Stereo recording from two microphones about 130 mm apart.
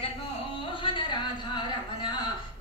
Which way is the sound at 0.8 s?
40° left (ahead or behind).